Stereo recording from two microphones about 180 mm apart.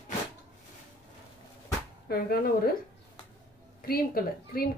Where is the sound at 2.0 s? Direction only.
60° left (ahead or behind).